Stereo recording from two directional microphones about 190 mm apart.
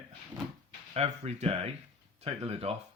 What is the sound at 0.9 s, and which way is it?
Speech, 35° right (ahead or behind).